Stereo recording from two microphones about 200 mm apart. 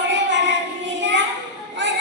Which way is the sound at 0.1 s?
60° right (ahead or behind).